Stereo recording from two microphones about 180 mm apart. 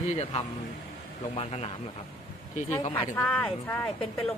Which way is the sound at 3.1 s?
10° left (ahead or behind).